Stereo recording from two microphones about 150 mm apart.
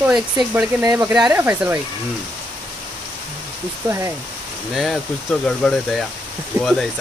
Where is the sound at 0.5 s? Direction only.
20° right (ahead or behind).